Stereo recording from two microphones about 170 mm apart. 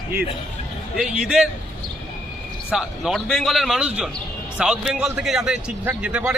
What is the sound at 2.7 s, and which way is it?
Speech, centre (ahead or behind).